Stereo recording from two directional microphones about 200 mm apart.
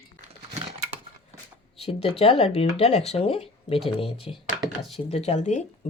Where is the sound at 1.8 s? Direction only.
30° left (ahead or behind).